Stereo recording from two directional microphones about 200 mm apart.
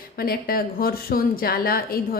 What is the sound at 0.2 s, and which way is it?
A woman's voice, 50° left (ahead or behind).